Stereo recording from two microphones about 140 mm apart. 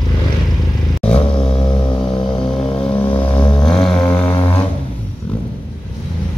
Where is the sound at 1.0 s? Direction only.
40° left (ahead or behind).